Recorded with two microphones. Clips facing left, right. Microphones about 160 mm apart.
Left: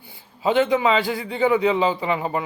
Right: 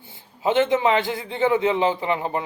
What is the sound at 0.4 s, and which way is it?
A man's voice, 20° right (ahead or behind).